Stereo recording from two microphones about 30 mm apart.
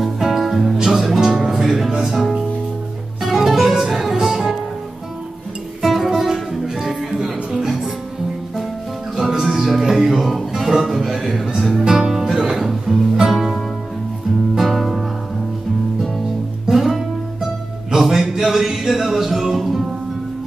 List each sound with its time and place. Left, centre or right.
0.4 s music: centre
5.8 s music: centre
9.1 s music: centre
11.8 s music: centre
14.6 s music: centre
16.7 s music: centre